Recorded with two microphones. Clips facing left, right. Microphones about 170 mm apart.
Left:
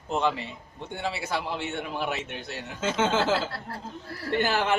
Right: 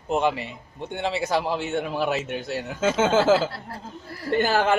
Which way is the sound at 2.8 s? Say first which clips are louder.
Right 5 dB; 45° right (ahead or behind).